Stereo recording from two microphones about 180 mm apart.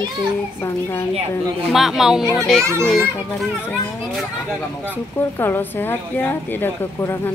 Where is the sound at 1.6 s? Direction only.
Centre (ahead or behind).